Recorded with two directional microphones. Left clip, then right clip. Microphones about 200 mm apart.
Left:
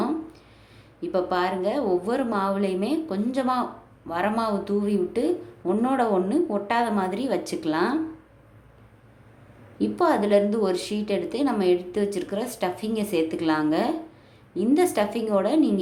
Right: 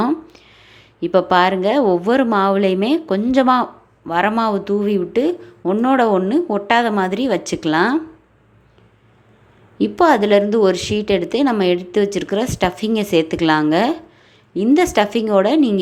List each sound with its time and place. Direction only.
0.0 s speech: 30° right (ahead or behind)
9.7 s speech: 25° right (ahead or behind)